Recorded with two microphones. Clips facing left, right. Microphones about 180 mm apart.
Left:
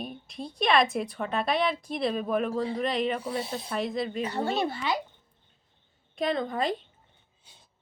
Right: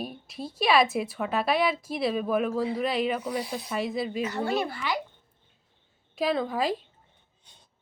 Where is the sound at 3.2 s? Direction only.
25° left (ahead or behind).